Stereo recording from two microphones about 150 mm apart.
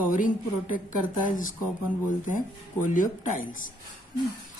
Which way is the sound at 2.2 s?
60° left (ahead or behind).